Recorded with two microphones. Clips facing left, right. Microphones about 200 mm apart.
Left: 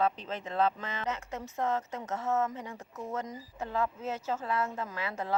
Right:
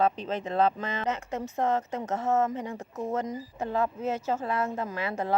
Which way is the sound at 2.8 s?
35° right (ahead or behind).